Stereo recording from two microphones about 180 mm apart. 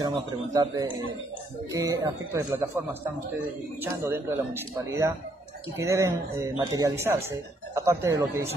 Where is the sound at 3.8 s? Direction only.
15° right (ahead or behind).